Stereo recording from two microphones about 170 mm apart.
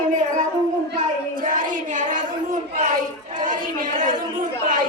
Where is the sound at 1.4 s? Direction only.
50° right (ahead or behind).